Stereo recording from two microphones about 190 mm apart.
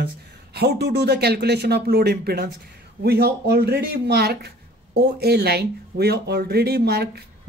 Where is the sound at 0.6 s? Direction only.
60° right (ahead or behind).